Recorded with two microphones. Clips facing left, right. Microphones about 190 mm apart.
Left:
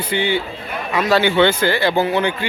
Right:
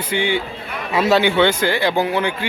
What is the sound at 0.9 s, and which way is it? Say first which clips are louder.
Speech: right 1 dB; 25° right (ahead or behind).